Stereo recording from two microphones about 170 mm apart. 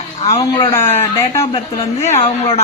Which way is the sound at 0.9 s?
15° left (ahead or behind).